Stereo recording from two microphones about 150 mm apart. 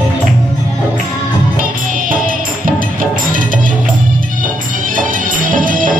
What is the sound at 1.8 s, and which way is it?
Music, 65° right (ahead or behind).